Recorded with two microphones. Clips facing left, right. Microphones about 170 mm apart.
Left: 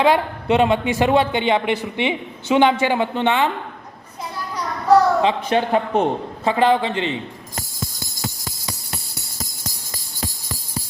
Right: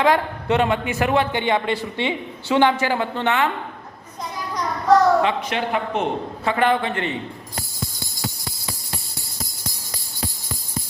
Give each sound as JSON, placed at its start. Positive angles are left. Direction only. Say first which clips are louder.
{"t": 0.0, "sound": "a man's voice", "louder": "left 2 dB", "side_deg": 20}
{"t": 5.2, "sound": "a man's voice", "louder": "left 3 dB", "side_deg": 30}